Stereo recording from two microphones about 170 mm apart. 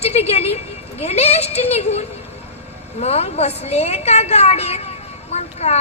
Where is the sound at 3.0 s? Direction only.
40° left (ahead or behind).